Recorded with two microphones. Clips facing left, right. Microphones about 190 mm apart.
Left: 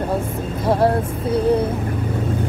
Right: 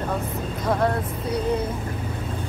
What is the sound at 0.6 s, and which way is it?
Vehicle, 30° left (ahead or behind).